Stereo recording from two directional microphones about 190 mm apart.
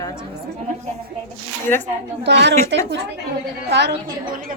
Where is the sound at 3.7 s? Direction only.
60° right (ahead or behind).